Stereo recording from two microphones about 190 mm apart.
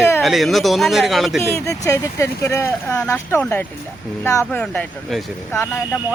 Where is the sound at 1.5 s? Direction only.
15° left (ahead or behind).